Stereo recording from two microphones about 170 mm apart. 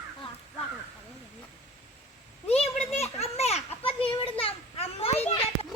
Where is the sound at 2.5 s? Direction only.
40° left (ahead or behind).